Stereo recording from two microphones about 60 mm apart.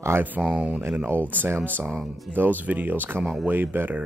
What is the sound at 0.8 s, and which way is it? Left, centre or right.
Speech, right.